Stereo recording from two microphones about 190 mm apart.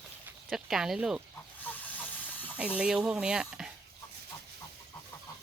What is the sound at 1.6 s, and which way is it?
Hiss, 10° left (ahead or behind).